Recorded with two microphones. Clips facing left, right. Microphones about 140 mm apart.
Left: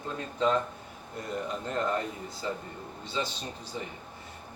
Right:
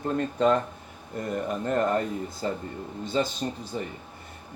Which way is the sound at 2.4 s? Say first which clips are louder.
Right 2 dB; 45° right (ahead or behind).